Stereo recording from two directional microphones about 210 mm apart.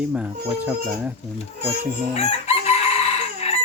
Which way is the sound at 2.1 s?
30° left (ahead or behind).